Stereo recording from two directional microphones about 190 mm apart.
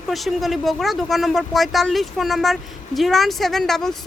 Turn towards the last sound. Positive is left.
turn(degrees=0)  # may be behind; listen again after turning